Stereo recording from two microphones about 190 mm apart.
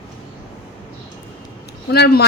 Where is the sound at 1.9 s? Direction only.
60° left (ahead or behind).